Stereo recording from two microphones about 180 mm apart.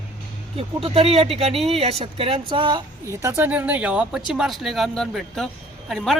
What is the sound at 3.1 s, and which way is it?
A man's voice, 15° right (ahead or behind).